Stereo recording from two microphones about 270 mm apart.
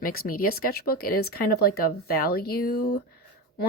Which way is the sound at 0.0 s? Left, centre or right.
Left.